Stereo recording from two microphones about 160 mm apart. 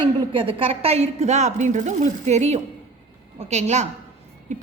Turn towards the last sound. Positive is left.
turn(degrees=-50)  # may be behind; listen again after turning